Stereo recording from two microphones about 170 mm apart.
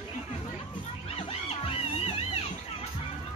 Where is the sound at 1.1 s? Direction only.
35° left (ahead or behind).